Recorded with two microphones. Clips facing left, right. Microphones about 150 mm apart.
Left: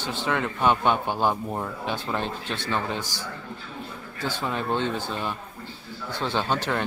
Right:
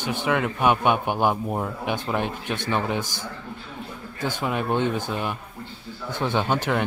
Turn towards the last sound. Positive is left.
turn(degrees=-15)  # may be behind; listen again after turning